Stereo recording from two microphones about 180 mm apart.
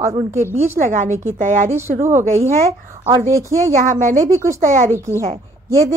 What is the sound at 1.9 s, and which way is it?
Speech, 15° right (ahead or behind).